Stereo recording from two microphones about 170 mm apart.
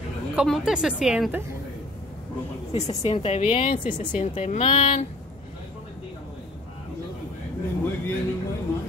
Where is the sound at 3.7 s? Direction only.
50° left (ahead or behind).